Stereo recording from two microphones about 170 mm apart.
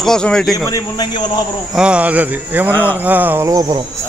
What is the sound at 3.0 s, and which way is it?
Speech, 10° right (ahead or behind).